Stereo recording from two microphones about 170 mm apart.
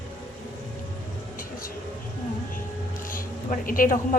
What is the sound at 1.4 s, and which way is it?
Vehicle, 55° left (ahead or behind).